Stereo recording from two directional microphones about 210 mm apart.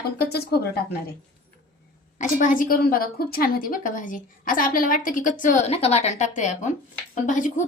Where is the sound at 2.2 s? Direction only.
40° left (ahead or behind).